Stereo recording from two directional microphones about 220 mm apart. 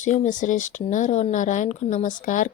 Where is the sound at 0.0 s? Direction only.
35° left (ahead or behind).